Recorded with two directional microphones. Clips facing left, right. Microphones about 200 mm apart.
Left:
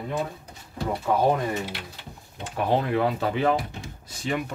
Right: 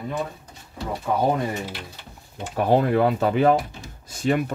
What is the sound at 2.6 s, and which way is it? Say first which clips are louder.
Speech: right 4 dB; 45° right (ahead or behind).